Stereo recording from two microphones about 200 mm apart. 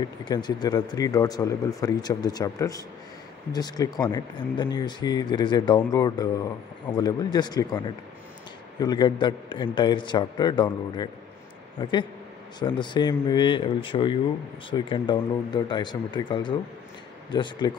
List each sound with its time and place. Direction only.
0.2 s speech: 20° left (ahead or behind)